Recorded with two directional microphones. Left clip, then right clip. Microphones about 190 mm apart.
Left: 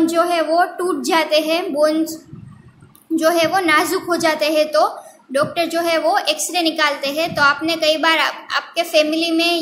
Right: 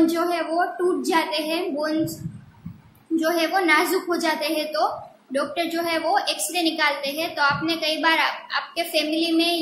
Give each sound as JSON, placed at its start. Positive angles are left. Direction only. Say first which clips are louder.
{"t": 0.0, "sound": "a woman's voice", "louder": "left 5 dB", "side_deg": 30}
{"t": 3.2, "sound": "a woman's voice", "louder": "left 6 dB", "side_deg": 30}